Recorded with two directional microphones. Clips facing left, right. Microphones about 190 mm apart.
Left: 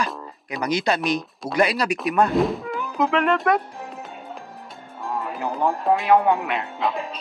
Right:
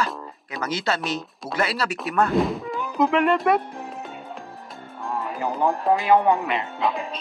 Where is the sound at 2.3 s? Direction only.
Centre (ahead or behind).